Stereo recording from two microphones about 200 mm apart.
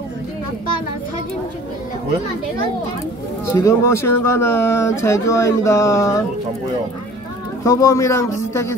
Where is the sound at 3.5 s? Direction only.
15° left (ahead or behind).